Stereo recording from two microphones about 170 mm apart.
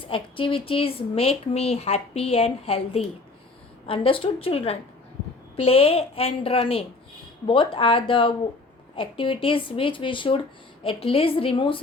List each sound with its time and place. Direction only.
0.0 s speech: 30° left (ahead or behind)